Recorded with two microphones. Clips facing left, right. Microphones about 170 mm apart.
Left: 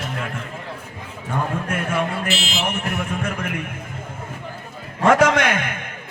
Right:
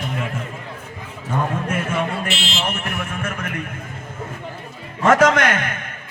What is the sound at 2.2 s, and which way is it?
Speech, 5° left (ahead or behind).